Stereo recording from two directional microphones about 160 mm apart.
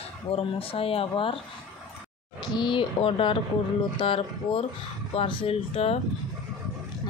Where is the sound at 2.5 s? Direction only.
30° left (ahead or behind).